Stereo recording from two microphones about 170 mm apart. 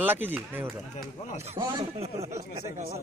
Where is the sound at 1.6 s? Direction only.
25° right (ahead or behind).